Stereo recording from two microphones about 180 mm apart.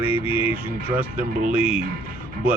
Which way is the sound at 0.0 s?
10° right (ahead or behind).